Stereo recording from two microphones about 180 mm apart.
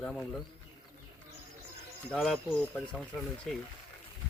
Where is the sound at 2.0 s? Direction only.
Centre (ahead or behind).